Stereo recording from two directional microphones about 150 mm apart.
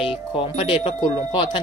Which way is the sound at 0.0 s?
35° left (ahead or behind).